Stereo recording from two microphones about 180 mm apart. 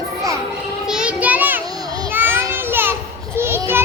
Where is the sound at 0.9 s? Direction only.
5° right (ahead or behind).